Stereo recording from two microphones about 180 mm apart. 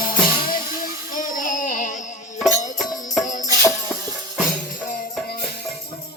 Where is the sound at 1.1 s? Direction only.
45° left (ahead or behind).